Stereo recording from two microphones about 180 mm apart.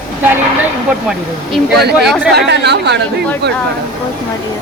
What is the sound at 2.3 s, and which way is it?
Speech, 70° right (ahead or behind).